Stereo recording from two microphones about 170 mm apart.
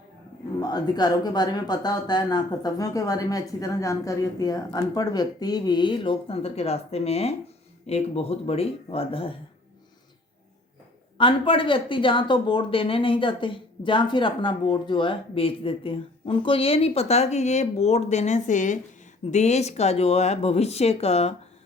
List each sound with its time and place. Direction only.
0.6 s speech: 25° left (ahead or behind)
11.2 s speech: 30° left (ahead or behind)